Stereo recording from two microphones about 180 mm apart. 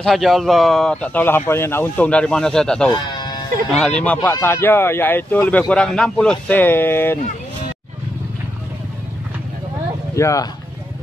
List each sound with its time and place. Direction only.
0.0 s a man's voice: centre (ahead or behind)
2.9 s speech: 25° left (ahead or behind)
4.0 s speech: 10° left (ahead or behind)
10.1 s speech: 15° left (ahead or behind)